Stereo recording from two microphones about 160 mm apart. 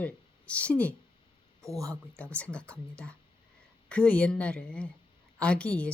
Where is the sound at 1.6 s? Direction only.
20° right (ahead or behind).